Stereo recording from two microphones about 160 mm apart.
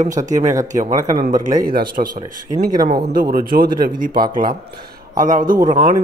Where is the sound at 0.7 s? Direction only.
50° right (ahead or behind).